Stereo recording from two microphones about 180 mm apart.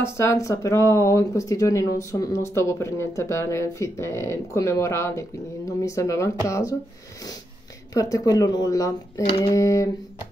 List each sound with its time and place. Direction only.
0.0 s speech: 15° left (ahead or behind)
7.9 s speech: 20° left (ahead or behind)